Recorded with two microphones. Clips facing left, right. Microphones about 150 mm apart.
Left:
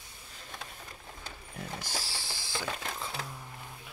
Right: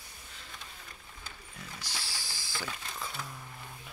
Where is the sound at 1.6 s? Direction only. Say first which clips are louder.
Left 6 dB; 45° left (ahead or behind).